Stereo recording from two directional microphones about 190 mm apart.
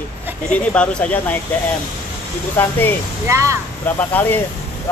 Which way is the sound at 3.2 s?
15° right (ahead or behind).